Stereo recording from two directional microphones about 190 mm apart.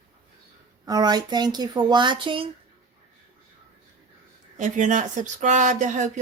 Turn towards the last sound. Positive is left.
turn(degrees=-40)  # may be behind; listen again after turning